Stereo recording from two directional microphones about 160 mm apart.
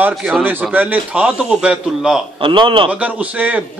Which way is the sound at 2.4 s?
30° right (ahead or behind).